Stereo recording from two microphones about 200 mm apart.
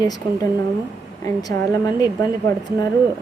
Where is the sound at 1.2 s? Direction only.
20° left (ahead or behind).